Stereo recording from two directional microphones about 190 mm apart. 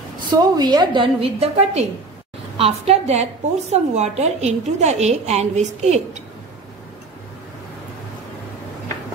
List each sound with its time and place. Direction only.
0.3 s a woman's voice: 20° right (ahead or behind); by 6.2 s 35° right (ahead or behind)